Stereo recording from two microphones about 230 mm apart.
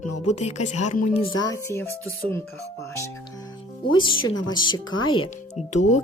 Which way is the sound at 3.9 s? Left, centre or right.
Left.